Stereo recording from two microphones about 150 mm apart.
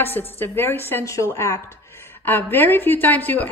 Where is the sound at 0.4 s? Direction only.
15° left (ahead or behind).